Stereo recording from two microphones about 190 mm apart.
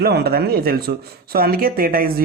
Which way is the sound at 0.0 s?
55° right (ahead or behind).